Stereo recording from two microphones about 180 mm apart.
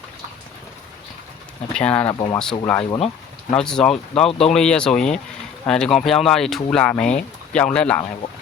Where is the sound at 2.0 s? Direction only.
25° left (ahead or behind).